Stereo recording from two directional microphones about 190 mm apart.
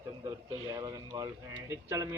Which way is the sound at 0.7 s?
20° right (ahead or behind).